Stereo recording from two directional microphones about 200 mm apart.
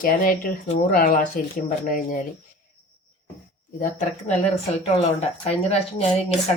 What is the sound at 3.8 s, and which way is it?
Speech, 35° left (ahead or behind).